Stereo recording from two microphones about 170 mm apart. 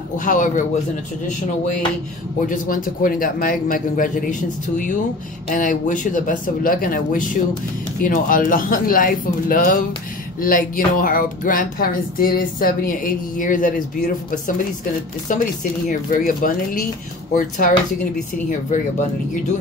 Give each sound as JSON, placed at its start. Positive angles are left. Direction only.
{"t": 0.2, "sound": "speech", "side_deg": 50}
{"t": 2.4, "sound": "speech", "side_deg": 50}
{"t": 15.9, "sound": "speech", "side_deg": 55}